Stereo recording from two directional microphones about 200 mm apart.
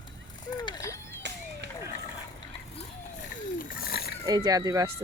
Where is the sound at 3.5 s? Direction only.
50° left (ahead or behind).